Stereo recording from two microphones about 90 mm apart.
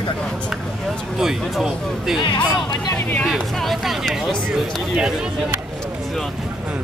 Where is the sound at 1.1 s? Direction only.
5° right (ahead or behind).